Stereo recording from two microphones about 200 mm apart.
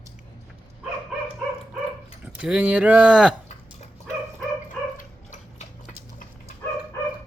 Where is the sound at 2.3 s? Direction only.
5° right (ahead or behind).